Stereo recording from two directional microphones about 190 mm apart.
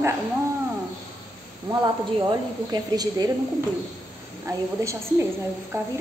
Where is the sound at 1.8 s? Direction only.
20° right (ahead or behind).